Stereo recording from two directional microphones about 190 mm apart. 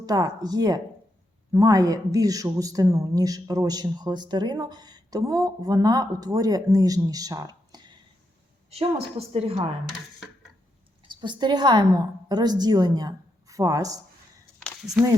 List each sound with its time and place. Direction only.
0.0 s a woman's voice: 20° right (ahead or behind)
9.1 s a woman's voice: 30° right (ahead or behind)
11.1 s a woman's voice: 25° right (ahead or behind)
14.6 s a sound: 5° left (ahead or behind)